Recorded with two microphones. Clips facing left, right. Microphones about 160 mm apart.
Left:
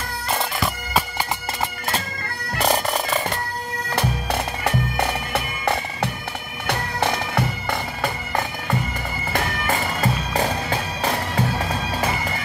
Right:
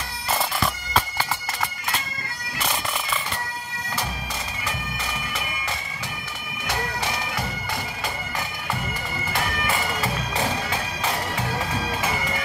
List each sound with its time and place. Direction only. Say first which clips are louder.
2.5 s cat: left 8 dB; 45° left (ahead or behind)
3.9 s bagpipes: left 7 dB; 65° left (ahead or behind)
9.3 s bagpipes: left 3 dB; 45° left (ahead or behind)